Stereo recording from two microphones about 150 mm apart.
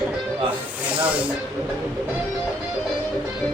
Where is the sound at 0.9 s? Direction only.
10° right (ahead or behind).